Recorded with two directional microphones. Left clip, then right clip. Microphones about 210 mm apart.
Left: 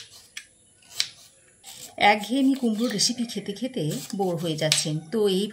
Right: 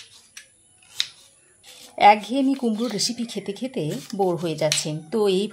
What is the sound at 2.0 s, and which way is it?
Speech, 30° right (ahead or behind).